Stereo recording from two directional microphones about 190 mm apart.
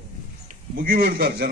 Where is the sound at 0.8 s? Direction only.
50° right (ahead or behind).